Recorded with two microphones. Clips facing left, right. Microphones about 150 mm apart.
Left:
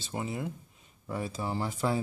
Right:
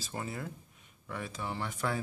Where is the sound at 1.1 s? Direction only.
30° left (ahead or behind).